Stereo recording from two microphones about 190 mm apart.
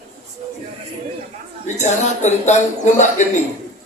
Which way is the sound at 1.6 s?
40° left (ahead or behind).